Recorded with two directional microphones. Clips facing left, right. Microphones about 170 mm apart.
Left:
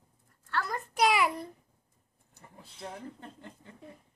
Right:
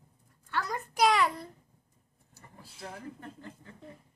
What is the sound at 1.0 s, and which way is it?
Speech, 10° left (ahead or behind).